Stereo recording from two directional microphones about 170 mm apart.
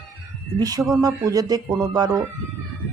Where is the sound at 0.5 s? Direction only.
20° right (ahead or behind).